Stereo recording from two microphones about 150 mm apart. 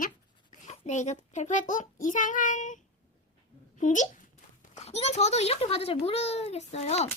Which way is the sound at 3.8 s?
55° left (ahead or behind).